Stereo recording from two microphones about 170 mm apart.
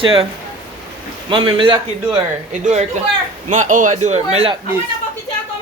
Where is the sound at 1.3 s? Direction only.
30° right (ahead or behind).